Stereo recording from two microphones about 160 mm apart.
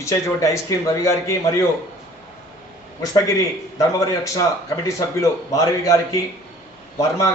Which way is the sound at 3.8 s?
20° left (ahead or behind).